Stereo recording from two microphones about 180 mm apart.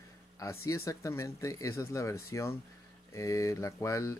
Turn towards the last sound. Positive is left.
turn(degrees=15)  # may be behind; listen again after turning